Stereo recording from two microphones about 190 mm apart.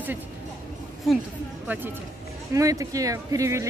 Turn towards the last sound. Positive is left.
turn(degrees=-15)  # may be behind; listen again after turning